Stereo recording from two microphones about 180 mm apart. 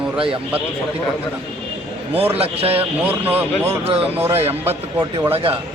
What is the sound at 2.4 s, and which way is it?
Speech, 35° right (ahead or behind).